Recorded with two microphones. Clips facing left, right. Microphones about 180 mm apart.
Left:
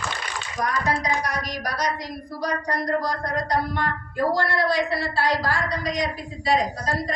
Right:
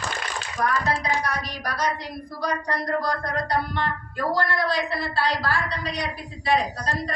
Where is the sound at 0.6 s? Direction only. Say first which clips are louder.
Even; 15° left (ahead or behind).